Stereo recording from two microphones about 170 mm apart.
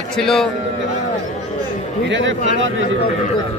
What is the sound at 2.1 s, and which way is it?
Speech, 90° right.